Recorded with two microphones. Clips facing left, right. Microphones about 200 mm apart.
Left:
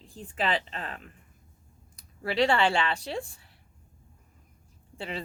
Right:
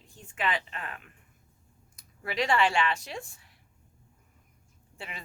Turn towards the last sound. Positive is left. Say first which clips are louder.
# left 8 dB
turn(degrees=30)  # may be behind; listen again after turning